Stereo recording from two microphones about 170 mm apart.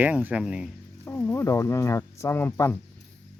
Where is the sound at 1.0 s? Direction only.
15° left (ahead or behind).